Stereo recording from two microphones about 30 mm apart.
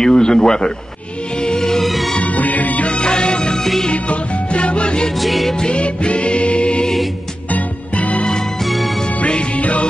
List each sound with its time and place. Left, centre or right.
0.0 s speech: left
1.4 s music: left
1.8 s music: centre
2.2 s music: left
2.9 s music: left
3.9 s music: left
5.2 s music: centre
5.7 s music: left
7.5 s music: left
8.6 s music: centre
9.6 s music: left